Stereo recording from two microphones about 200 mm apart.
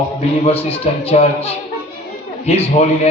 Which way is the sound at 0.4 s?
30° left (ahead or behind).